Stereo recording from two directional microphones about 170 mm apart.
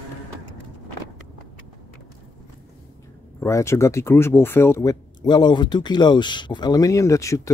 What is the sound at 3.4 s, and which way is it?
Speech, 15° left (ahead or behind).